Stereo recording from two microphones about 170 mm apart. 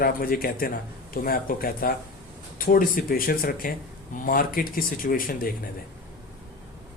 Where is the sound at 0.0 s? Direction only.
55° left (ahead or behind).